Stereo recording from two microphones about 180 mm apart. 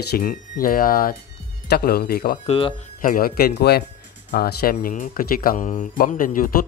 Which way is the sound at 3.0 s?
50° left (ahead or behind).